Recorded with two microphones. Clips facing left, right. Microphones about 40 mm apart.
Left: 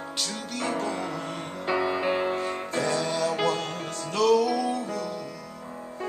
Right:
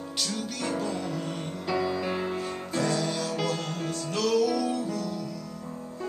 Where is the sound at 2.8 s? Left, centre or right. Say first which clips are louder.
Left 2 dB; centre.